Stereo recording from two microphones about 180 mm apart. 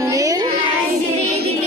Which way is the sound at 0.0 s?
20° right (ahead or behind).